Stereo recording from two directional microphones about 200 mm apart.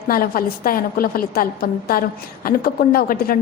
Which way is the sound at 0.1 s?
45° left (ahead or behind).